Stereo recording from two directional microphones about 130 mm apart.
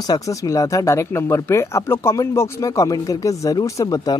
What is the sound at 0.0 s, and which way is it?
Speech, 25° left (ahead or behind).